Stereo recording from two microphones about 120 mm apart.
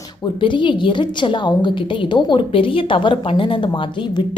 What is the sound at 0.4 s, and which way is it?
A woman's voice, 40° left (ahead or behind).